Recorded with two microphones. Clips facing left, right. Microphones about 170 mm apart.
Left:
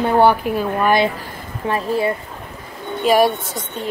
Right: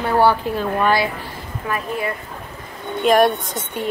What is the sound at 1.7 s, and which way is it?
Speech, 30° left (ahead or behind).